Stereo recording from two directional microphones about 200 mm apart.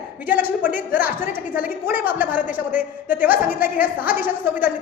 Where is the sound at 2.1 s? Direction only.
10° right (ahead or behind).